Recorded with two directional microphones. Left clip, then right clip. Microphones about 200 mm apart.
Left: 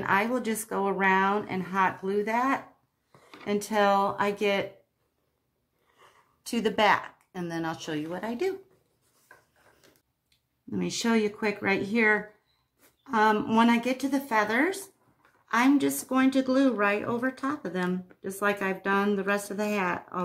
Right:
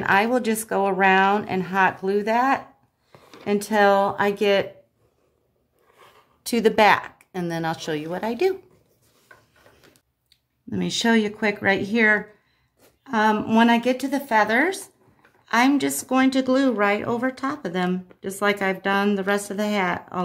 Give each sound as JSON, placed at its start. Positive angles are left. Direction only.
{"t": 0.0, "sound": "a woman's voice", "side_deg": -40}
{"t": 6.4, "sound": "a woman's voice", "side_deg": -40}
{"t": 10.7, "sound": "a woman's voice", "side_deg": -35}